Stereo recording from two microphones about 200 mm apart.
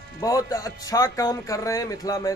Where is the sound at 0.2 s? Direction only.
15° left (ahead or behind).